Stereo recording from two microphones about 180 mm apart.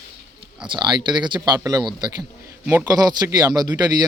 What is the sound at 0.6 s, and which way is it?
Speech, 25° right (ahead or behind).